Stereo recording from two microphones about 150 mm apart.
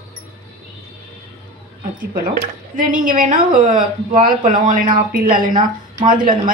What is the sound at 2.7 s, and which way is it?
Speech, 60° right (ahead or behind).